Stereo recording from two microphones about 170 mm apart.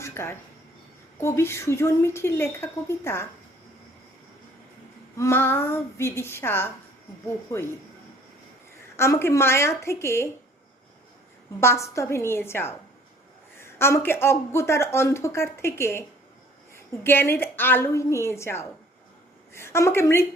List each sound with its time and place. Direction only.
0.0 s a woman's voice: 15° left (ahead or behind)
5.1 s a woman's voice: 15° left (ahead or behind)
9.0 s a woman's voice: 15° left (ahead or behind)
11.6 s a woman's voice: 15° left (ahead or behind)